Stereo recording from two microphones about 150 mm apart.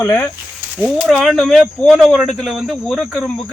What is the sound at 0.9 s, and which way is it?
Speech, 10° right (ahead or behind).